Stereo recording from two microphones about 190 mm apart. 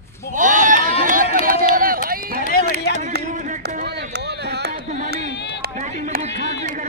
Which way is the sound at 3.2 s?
40° right (ahead or behind).